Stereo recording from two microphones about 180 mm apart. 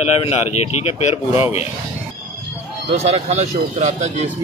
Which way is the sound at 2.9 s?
35° right (ahead or behind).